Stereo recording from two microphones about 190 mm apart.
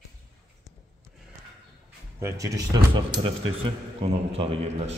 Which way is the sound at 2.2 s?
15° right (ahead or behind).